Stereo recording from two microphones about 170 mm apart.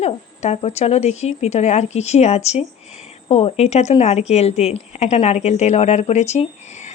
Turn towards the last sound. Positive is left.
turn(degrees=40)  # may be behind; listen again after turning